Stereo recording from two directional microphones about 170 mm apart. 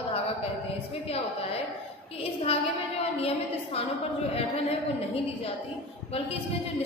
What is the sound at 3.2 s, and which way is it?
A woman's voice, 35° left (ahead or behind).